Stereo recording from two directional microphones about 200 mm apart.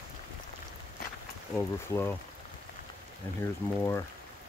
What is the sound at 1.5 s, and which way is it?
Speech, 10° left (ahead or behind).